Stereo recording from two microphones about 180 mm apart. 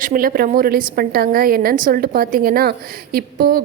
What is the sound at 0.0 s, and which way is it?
A woman's voice, 50° right (ahead or behind).